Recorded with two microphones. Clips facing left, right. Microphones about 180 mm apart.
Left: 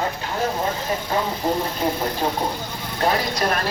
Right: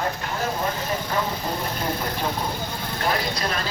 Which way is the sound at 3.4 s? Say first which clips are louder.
Left 5 dB; 55° left (ahead or behind).